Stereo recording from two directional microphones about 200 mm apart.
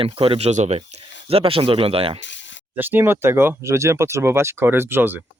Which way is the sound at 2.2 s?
65° left (ahead or behind).